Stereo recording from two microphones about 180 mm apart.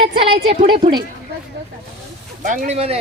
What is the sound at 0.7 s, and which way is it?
Speech, 25° right (ahead or behind).